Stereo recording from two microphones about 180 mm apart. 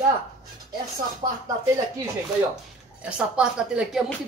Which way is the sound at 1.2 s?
25° right (ahead or behind).